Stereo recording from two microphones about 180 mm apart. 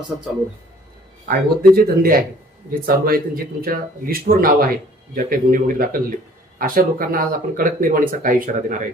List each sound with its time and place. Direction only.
1.3 s speech: 55° right (ahead or behind)